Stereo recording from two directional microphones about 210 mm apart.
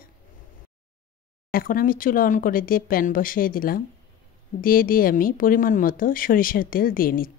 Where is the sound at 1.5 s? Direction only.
45° left (ahead or behind).